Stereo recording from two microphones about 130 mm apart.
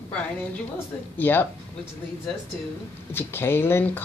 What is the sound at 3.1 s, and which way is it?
Speech, 15° left (ahead or behind).